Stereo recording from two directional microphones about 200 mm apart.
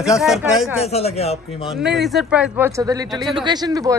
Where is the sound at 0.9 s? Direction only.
30° left (ahead or behind).